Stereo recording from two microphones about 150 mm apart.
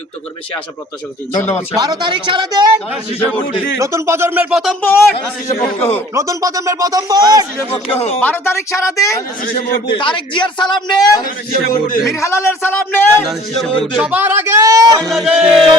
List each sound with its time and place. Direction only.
1.7 s speech: 25° right (ahead or behind)
3.8 s speech: 20° right (ahead or behind)
4.8 s a man's voice: 15° left (ahead or behind)
6.1 s speech: 20° right (ahead or behind)
7.9 s speech: 40° left (ahead or behind)
8.2 s a man's voice: 15° left (ahead or behind)
10.0 s speech: 30° left (ahead or behind)
11.5 s a man's voice: 70° left (ahead or behind)
12.1 s a man's voice: 20° left (ahead or behind)
13.9 s speech: 10° right (ahead or behind); by 15.1 s 25° right (ahead or behind)
15.1 s music: centre (ahead or behind)